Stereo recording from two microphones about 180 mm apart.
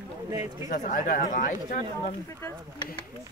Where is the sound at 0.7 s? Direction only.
45° left (ahead or behind).